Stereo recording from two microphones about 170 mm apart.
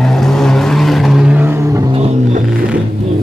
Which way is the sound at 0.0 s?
Centre (ahead or behind).